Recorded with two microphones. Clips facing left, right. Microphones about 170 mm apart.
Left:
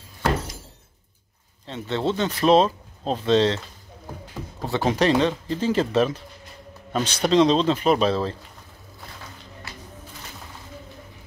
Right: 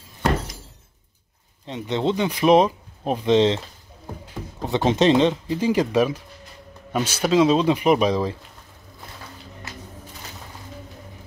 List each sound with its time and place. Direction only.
1.7 s speech: 15° right (ahead or behind)